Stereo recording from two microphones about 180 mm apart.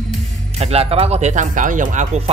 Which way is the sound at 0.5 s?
35° right (ahead or behind).